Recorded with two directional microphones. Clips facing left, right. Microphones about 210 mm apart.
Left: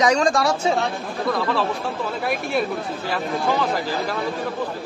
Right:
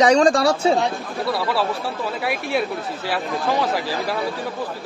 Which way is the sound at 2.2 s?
Centre (ahead or behind).